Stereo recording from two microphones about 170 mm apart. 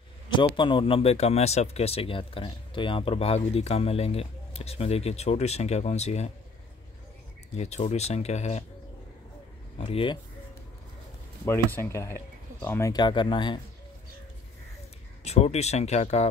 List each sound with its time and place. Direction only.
0.3 s speech: 30° left (ahead or behind)
7.5 s speech: 40° left (ahead or behind)
9.8 s speech: 35° left (ahead or behind)
11.4 s speech: 15° left (ahead or behind)
15.2 s speech: 40° left (ahead or behind)